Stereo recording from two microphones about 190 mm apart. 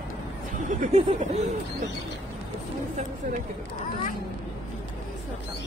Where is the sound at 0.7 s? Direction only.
40° right (ahead or behind).